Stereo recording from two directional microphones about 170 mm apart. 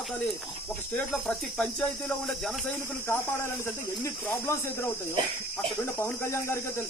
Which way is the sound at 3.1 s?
15° left (ahead or behind).